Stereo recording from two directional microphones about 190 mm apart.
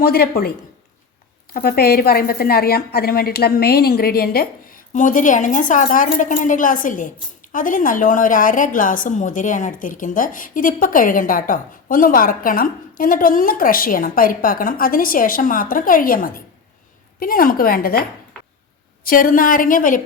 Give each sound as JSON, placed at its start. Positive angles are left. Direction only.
{"t": 0.0, "sound": "a woman's voice", "side_deg": 55}
{"t": 1.5, "sound": "a woman's voice", "side_deg": 55}
{"t": 19.0, "sound": "a woman's voice", "side_deg": 50}